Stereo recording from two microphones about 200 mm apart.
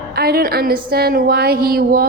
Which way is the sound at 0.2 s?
50° right (ahead or behind).